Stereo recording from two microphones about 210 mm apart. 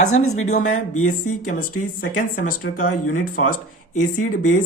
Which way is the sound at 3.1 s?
35° left (ahead or behind).